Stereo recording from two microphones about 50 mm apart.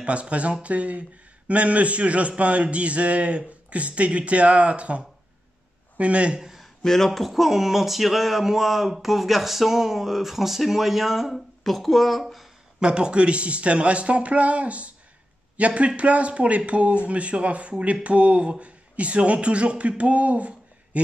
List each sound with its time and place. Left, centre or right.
0.0 s a man's voice: right
6.4 s a sound: centre
6.8 s speech: centre
12.8 s a man's voice: centre